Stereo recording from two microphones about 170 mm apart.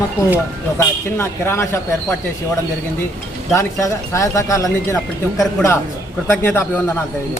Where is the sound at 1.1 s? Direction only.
15° left (ahead or behind).